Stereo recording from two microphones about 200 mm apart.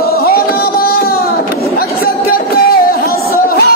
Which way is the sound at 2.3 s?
50° left (ahead or behind).